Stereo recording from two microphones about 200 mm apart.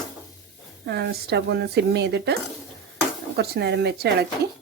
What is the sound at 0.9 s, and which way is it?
Speech, 55° right (ahead or behind).